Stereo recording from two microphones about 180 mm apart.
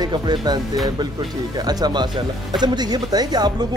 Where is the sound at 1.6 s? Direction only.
20° right (ahead or behind).